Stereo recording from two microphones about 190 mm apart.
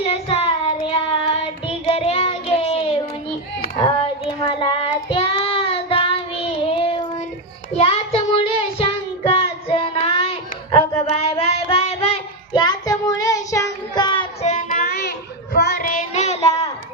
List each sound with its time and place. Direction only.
0.0 s child singing: 30° left (ahead or behind)
14.4 s child singing: 45° left (ahead or behind)